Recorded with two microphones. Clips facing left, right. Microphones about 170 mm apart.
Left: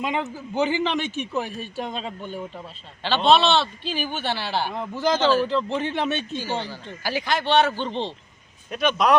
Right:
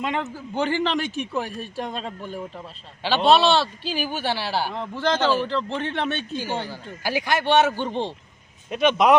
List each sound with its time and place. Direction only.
0.0 s a man's voice: centre (ahead or behind)
4.7 s a man's voice: 5° left (ahead or behind)
6.3 s a man's voice: 10° right (ahead or behind)